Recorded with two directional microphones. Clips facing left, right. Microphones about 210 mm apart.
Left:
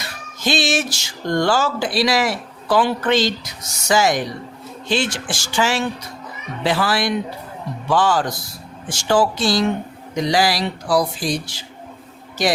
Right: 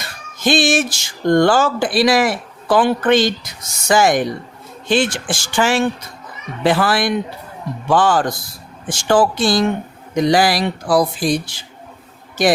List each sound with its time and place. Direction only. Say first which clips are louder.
0.3 s speech: right 5 dB; 50° right (ahead or behind)